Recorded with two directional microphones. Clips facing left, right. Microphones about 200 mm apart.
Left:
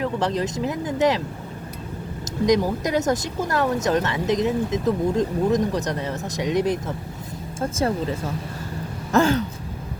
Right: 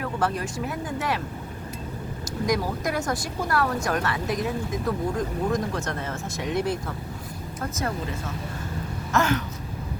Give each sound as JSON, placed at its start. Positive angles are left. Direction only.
{"t": 0.0, "sound": "speech", "side_deg": 20}
{"t": 2.5, "sound": "speech", "side_deg": 20}
{"t": 7.6, "sound": "speech", "side_deg": 30}
{"t": 9.1, "sound": "a sound", "side_deg": 30}